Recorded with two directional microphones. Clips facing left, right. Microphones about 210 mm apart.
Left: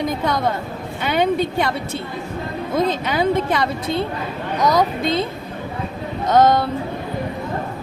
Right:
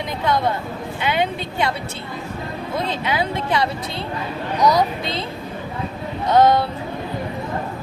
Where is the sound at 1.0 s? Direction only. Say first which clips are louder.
Left 5 dB; 45° left (ahead or behind).